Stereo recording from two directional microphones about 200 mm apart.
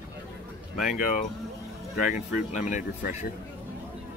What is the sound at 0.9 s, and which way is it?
Speech, 40° left (ahead or behind).